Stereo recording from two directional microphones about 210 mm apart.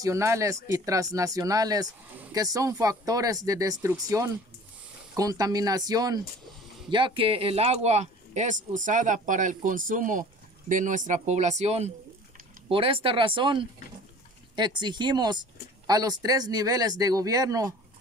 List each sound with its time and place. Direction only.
0.0 s speech: 15° right (ahead or behind)